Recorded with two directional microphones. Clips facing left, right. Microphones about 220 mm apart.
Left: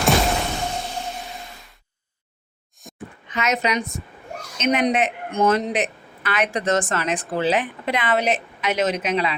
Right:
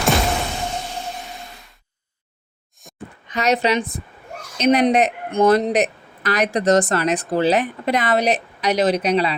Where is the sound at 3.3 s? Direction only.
35° right (ahead or behind).